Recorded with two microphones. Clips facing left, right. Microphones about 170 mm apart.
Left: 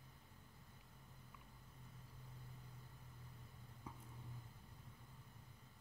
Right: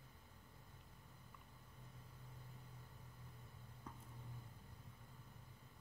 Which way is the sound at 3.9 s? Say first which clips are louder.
Left 1 dB; 10° left (ahead or behind).